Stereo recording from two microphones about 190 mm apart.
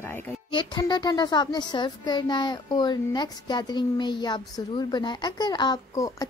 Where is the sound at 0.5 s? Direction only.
25° left (ahead or behind).